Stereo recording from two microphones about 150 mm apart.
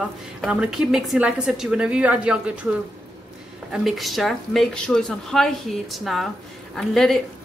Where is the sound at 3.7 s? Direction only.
Centre (ahead or behind).